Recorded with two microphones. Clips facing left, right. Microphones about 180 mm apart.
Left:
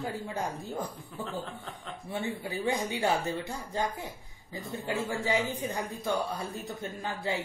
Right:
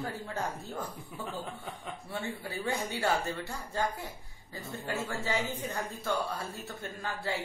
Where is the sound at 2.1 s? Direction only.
15° left (ahead or behind).